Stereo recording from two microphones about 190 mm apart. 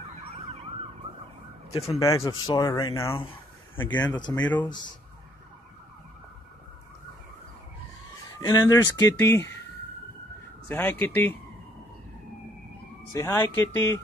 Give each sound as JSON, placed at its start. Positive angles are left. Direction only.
{"t": 1.7, "sound": "speech", "side_deg": 30}
{"t": 2.0, "sound": "speech", "side_deg": 15}
{"t": 4.2, "sound": "speech", "side_deg": 20}
{"t": 8.4, "sound": "speech", "side_deg": 20}
{"t": 10.7, "sound": "speech", "side_deg": 10}
{"t": 13.1, "sound": "speech", "side_deg": 15}